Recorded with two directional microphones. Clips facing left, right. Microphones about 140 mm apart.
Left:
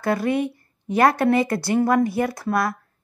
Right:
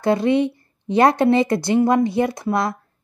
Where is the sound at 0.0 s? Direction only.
25° right (ahead or behind).